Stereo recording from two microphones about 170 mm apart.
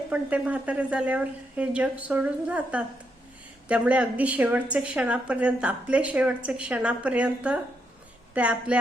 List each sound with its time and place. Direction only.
0.1 s a woman's voice: 10° right (ahead or behind)